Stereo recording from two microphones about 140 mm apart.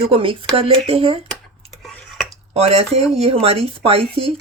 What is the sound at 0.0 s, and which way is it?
Speech, 40° right (ahead or behind).